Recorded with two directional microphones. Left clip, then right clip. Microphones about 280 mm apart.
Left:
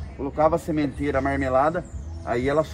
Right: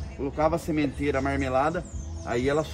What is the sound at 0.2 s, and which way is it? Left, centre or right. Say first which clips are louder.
A man's voice: left 4 dB; centre.